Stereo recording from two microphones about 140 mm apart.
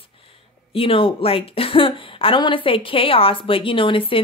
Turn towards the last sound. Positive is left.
turn(degrees=40)  # may be behind; listen again after turning